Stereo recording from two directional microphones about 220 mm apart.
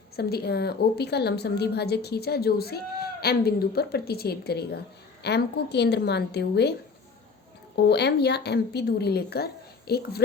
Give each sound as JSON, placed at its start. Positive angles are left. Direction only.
{"t": 0.2, "sound": "a woman's voice", "side_deg": 45}
{"t": 7.8, "sound": "a woman's voice", "side_deg": 50}